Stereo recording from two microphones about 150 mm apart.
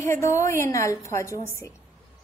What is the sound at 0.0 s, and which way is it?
A woman's voice, 20° left (ahead or behind).